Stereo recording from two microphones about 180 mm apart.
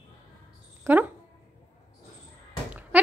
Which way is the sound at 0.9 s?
15° right (ahead or behind).